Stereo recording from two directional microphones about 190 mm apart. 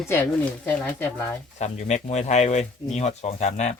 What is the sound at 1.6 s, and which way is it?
Speech, 35° left (ahead or behind).